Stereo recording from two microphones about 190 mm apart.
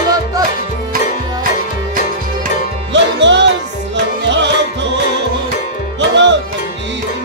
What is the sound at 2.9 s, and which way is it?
Music, 70° right (ahead or behind).